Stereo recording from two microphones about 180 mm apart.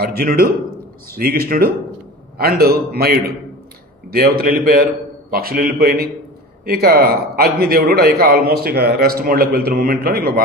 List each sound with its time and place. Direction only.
0.0 s a man's voice: 55° right (ahead or behind)